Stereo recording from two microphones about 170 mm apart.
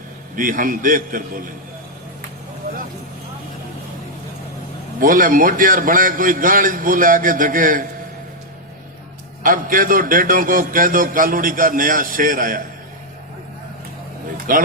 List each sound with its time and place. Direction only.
0.3 s a man's voice: 55° right (ahead or behind)
4.9 s a man's voice: 55° right (ahead or behind)
9.4 s a man's voice: 55° right (ahead or behind)
14.5 s a man's voice: 55° right (ahead or behind)